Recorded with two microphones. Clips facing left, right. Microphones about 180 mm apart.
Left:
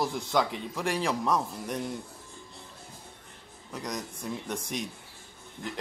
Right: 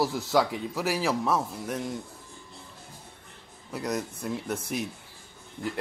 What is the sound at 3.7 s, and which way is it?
Speech, 5° right (ahead or behind).